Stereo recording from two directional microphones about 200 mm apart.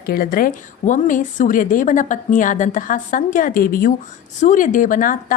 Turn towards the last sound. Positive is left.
turn(degrees=40)  # may be behind; listen again after turning